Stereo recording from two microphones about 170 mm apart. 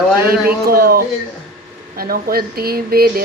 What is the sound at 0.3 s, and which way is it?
Speech, 60° right (ahead or behind).